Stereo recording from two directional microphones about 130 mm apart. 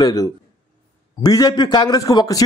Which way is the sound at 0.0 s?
30° left (ahead or behind).